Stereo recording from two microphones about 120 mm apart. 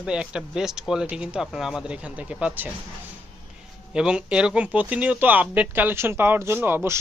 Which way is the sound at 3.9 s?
5° right (ahead or behind).